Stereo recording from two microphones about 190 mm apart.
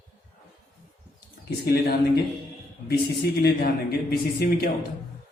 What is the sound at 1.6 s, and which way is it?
A man's voice, 55° left (ahead or behind).